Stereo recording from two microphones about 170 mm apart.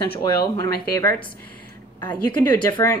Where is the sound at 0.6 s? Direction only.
15° left (ahead or behind).